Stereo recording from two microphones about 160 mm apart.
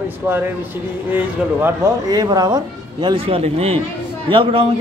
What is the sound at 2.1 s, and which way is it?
A man's voice, 25° right (ahead or behind).